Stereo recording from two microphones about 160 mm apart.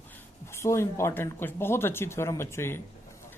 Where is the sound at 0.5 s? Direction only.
15° left (ahead or behind).